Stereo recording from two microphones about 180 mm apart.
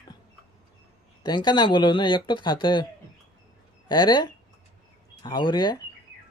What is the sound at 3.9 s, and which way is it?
Speech, 25° left (ahead or behind).